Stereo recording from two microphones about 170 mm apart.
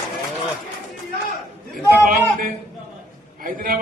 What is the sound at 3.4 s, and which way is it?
Speech, 55° right (ahead or behind).